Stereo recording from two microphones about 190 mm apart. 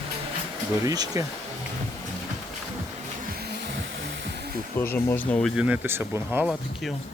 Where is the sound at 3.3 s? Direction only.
60° right (ahead or behind).